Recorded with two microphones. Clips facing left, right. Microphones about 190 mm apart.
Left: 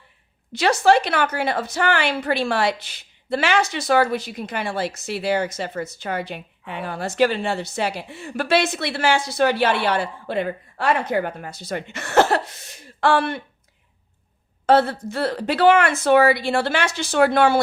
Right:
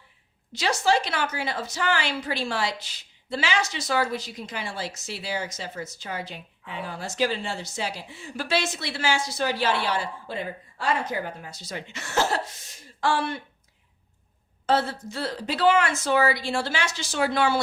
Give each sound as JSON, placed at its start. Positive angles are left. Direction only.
{"t": 0.5, "sound": "a woman's voice", "side_deg": 60}
{"t": 14.7, "sound": "a woman's voice", "side_deg": 60}